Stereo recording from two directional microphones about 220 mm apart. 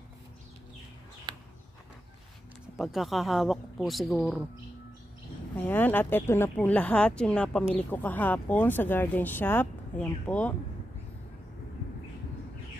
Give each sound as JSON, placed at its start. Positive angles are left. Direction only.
{"t": 1.3, "sound": "a sound", "side_deg": -20}
{"t": 2.8, "sound": "speech", "side_deg": 0}
{"t": 5.6, "sound": "speech", "side_deg": 10}